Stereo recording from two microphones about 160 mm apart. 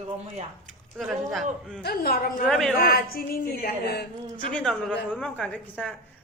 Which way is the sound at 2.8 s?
65° left (ahead or behind).